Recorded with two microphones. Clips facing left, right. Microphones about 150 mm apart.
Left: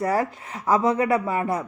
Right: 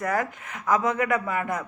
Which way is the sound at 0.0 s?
30° left (ahead or behind).